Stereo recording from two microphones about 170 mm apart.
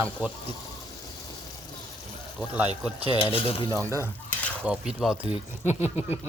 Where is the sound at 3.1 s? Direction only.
30° left (ahead or behind).